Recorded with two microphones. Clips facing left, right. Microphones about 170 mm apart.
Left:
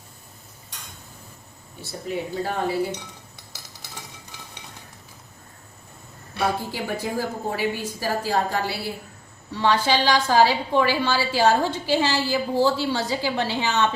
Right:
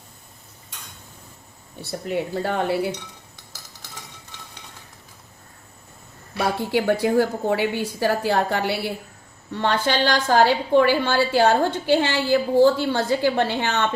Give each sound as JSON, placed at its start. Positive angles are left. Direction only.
{"t": 1.8, "sound": "a woman's voice", "side_deg": -65}
{"t": 4.3, "sound": "a sound", "side_deg": 10}
{"t": 6.6, "sound": "a woman's voice", "side_deg": -70}
{"t": 9.5, "sound": "a woman's voice", "side_deg": -55}